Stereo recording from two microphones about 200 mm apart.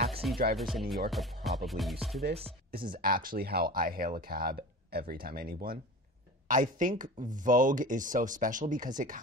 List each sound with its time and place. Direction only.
0.2 s music: centre (ahead or behind)
0.6 s speech: centre (ahead or behind)
2.7 s speech: 45° right (ahead or behind)